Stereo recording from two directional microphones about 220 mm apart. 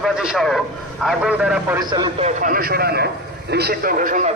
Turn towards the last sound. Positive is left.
turn(degrees=-35)  # may be behind; listen again after turning